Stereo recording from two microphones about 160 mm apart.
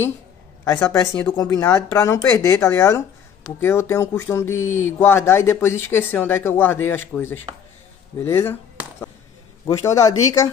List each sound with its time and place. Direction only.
0.7 s speech: 10° left (ahead or behind)
1.3 s speech: 25° left (ahead or behind)
9.7 s speech: 20° left (ahead or behind)